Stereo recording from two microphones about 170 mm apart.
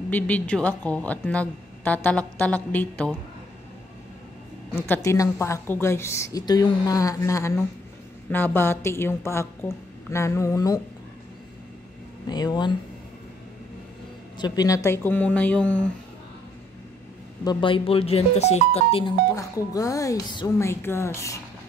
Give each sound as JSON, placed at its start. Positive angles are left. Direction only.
{"t": 0.1, "sound": "a woman's voice", "side_deg": 10}
{"t": 4.7, "sound": "a woman's voice", "side_deg": 15}
{"t": 12.3, "sound": "speech", "side_deg": 25}
{"t": 14.4, "sound": "a woman's voice", "side_deg": 25}
{"t": 17.5, "sound": "speech", "side_deg": 30}
{"t": 19.3, "sound": "speech", "side_deg": 20}